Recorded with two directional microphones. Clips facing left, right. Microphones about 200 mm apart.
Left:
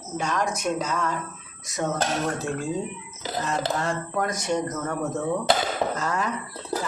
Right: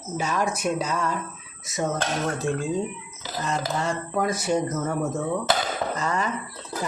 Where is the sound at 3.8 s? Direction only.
Centre (ahead or behind).